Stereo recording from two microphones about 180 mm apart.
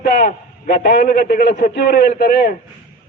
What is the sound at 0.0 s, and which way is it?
A man's voice, 60° left (ahead or behind).